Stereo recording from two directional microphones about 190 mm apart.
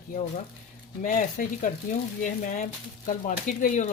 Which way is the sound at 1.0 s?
45° left (ahead or behind).